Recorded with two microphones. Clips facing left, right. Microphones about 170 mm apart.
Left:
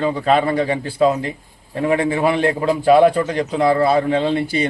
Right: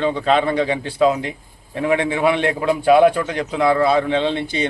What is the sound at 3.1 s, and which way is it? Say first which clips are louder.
A man's voice: left 3 dB; 35° left (ahead or behind).